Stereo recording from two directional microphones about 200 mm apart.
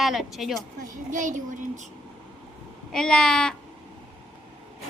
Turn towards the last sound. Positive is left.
turn(degrees=5)  # may be behind; listen again after turning